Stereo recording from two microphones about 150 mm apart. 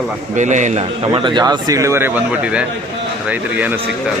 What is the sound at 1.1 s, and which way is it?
A man's voice, 30° right (ahead or behind).